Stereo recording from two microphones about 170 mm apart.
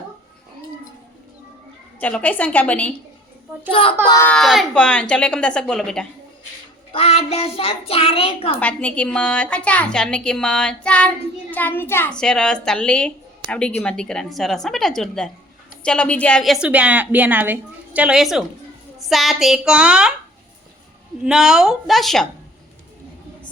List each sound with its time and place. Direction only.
2.0 s a woman's voice: 10° left (ahead or behind)
3.7 s a child's voice: 30° left (ahead or behind)
4.2 s a child's voice: 5° left (ahead or behind)
6.9 s a child's voice: 35° left (ahead or behind)
8.6 s a child's voice: 5° left (ahead or behind)
21.2 s a child's voice: 5° right (ahead or behind)